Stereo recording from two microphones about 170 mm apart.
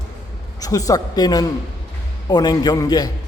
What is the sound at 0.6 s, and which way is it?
A man's voice, 20° left (ahead or behind).